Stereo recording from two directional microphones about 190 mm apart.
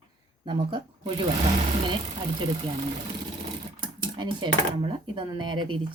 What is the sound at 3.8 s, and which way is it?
Speech, 25° right (ahead or behind).